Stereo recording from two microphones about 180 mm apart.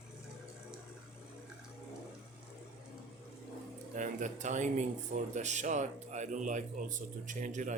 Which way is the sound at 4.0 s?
45° right (ahead or behind).